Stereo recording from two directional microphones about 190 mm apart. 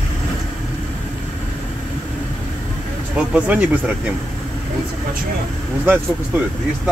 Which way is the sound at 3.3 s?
5° right (ahead or behind).